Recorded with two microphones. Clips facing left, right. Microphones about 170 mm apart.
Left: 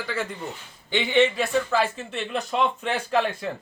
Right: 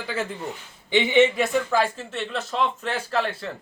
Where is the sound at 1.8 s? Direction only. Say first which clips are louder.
Right 1 dB; 10° left (ahead or behind).